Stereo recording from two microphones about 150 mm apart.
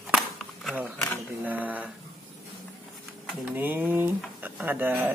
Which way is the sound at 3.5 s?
10° right (ahead or behind).